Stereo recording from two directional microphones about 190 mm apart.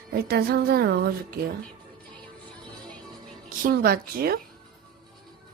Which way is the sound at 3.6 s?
50° right (ahead or behind).